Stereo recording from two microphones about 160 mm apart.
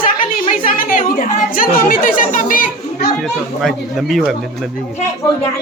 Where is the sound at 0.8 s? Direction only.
60° left (ahead or behind).